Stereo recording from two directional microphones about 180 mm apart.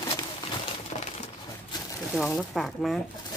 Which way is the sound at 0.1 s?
30° left (ahead or behind).